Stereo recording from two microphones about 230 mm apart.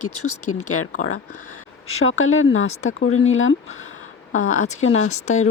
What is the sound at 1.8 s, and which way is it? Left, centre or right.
Speech, left.